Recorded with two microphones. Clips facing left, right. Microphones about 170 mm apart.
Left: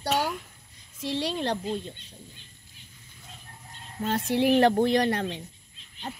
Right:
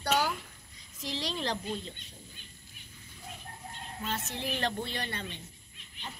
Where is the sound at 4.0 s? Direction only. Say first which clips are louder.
Left 12 dB; 50° left (ahead or behind); by 5.4 s 80° left.